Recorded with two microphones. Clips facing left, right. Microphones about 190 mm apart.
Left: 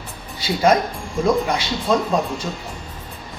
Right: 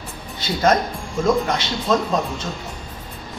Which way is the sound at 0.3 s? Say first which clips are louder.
Left 1 dB; 10° left (ahead or behind).